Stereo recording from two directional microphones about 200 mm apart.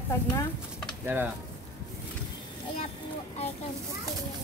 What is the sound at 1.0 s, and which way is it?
Speech, 10° right (ahead or behind).